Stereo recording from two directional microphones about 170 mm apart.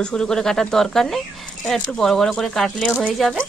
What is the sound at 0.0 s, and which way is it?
Speech, 5° left (ahead or behind).